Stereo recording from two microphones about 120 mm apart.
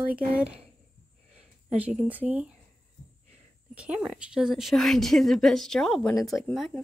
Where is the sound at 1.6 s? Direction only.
10° right (ahead or behind).